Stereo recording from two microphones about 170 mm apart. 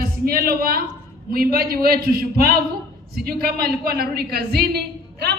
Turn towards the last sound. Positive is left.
turn(degrees=-70)  # may be behind; listen again after turning